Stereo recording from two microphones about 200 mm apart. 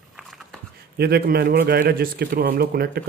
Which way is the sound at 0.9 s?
50° right (ahead or behind).